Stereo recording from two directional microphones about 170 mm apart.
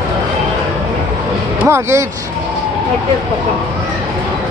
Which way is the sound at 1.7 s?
15° right (ahead or behind).